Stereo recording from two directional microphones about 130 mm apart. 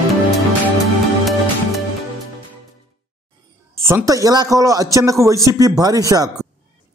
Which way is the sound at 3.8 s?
25° right (ahead or behind).